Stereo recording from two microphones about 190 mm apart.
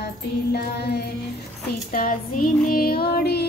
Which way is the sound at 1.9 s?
50° left (ahead or behind).